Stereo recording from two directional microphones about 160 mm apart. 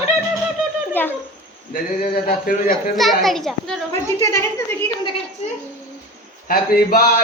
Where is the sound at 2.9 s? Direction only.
Centre (ahead or behind).